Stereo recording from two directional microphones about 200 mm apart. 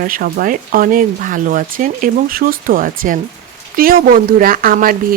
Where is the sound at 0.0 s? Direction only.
45° right (ahead or behind).